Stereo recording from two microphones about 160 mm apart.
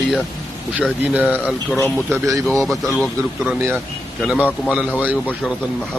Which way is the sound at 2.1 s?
20° right (ahead or behind).